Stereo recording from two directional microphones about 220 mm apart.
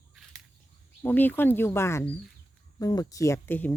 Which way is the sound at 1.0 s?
10° left (ahead or behind).